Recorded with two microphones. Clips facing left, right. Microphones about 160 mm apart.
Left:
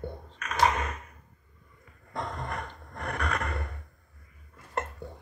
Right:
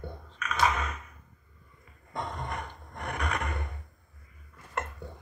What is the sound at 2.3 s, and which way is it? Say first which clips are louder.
Music: left 1 dB; 35° left (ahead or behind).